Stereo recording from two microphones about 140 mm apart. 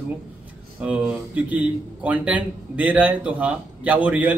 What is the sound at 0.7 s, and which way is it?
A man's voice, 10° right (ahead or behind).